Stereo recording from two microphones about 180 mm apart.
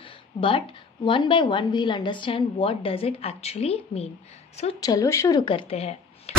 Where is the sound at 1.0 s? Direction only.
30° left (ahead or behind).